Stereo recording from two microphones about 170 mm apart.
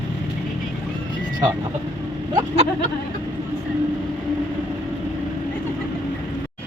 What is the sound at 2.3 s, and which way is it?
Vehicle, 35° right (ahead or behind).